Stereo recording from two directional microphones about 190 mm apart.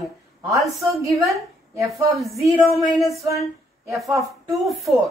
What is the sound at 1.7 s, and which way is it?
Speech, 15° right (ahead or behind).